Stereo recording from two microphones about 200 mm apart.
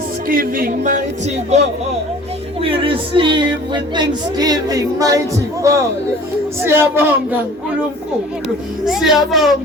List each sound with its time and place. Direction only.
0.3 s speech: 45° right (ahead or behind); by 7.3 s 10° right (ahead or behind)
8.8 s a child's voice: centre (ahead or behind)